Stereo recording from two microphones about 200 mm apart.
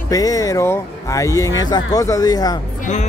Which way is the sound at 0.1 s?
15° left (ahead or behind).